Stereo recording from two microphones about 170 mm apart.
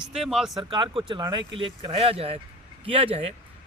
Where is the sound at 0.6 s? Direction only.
30° right (ahead or behind).